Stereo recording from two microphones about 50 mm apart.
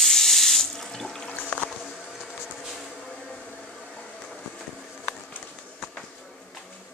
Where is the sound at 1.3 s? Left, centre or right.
Left.